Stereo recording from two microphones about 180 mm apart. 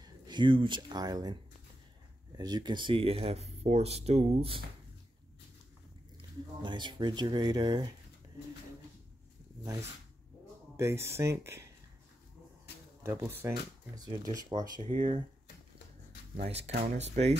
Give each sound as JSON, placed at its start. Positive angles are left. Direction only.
{"t": 0.0, "sound": "speech", "side_deg": -25}
{"t": 6.1, "sound": "speech", "side_deg": -25}
{"t": 9.6, "sound": "speech", "side_deg": -15}
{"t": 13.0, "sound": "speech", "side_deg": -15}
{"t": 16.3, "sound": "speech", "side_deg": -35}